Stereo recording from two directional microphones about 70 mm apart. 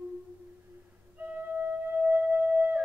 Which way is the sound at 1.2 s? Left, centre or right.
Right.